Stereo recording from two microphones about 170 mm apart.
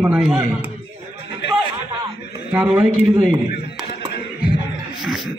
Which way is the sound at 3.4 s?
65° left (ahead or behind).